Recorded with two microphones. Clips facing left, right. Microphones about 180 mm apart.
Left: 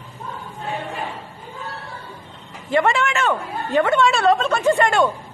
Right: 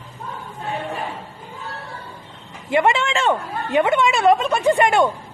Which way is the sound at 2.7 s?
20° right (ahead or behind).